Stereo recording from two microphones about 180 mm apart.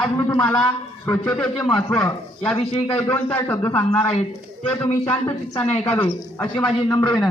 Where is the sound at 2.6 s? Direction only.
30° left (ahead or behind).